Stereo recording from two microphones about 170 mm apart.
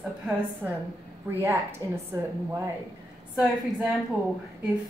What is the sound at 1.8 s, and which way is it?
Speech, 20° right (ahead or behind).